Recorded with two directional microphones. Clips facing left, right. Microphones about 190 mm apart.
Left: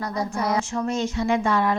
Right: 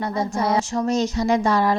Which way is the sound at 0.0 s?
25° right (ahead or behind).